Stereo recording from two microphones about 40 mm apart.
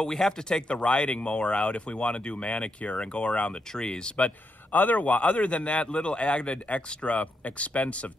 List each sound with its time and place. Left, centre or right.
0.1 s speech: centre
4.7 s speech: left